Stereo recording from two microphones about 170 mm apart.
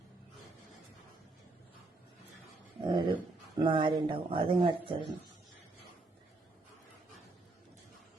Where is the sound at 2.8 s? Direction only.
30° right (ahead or behind).